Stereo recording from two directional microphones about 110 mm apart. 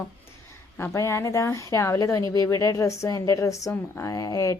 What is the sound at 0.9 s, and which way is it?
A woman's voice, 25° left (ahead or behind).